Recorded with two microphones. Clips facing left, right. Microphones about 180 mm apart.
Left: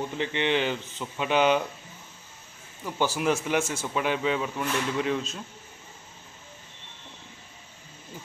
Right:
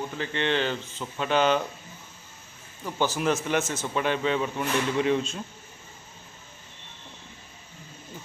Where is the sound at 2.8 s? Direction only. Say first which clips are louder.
Even; 10° left (ahead or behind).